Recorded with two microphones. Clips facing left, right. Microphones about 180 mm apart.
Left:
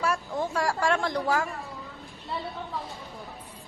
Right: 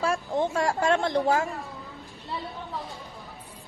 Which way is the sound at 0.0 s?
25° right (ahead or behind).